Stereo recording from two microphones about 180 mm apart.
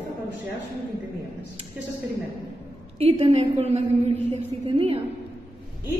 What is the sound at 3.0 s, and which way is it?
A woman's voice, 35° right (ahead or behind).